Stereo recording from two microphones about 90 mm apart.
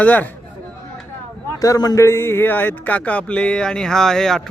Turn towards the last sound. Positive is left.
turn(degrees=5)  # may be behind; listen again after turning